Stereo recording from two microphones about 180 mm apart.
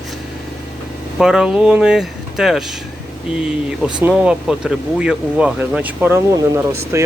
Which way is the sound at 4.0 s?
5° right (ahead or behind).